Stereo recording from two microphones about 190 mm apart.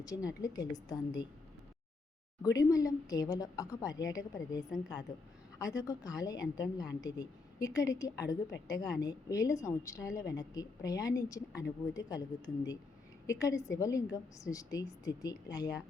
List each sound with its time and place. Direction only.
0.0 s a woman's voice: 20° left (ahead or behind)
2.4 s a woman's voice: 15° left (ahead or behind)
13.2 s a woman's voice: 15° left (ahead or behind)